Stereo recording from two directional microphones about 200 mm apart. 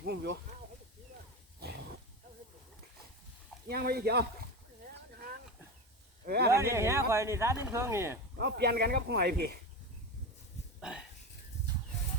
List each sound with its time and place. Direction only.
0.0 s speech: 55° right (ahead or behind)
3.7 s speech: 50° right (ahead or behind)
6.2 s speech: 55° right (ahead or behind)
6.5 s speech: 15° right (ahead or behind)
8.4 s speech: 55° right (ahead or behind)
10.8 s a sound: 5° right (ahead or behind)